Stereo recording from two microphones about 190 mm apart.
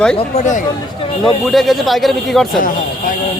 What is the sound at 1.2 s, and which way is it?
A man's voice, centre (ahead or behind).